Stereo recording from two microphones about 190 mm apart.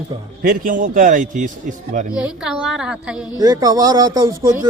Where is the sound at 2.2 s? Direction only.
5° right (ahead or behind).